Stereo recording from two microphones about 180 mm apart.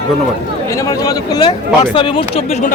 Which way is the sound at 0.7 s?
20° left (ahead or behind).